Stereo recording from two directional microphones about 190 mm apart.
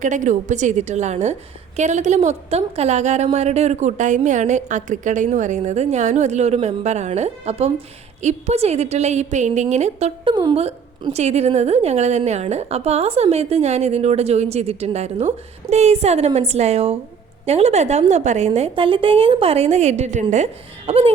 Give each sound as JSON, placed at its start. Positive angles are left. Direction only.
{"t": 0.0, "sound": "a woman's voice", "side_deg": -40}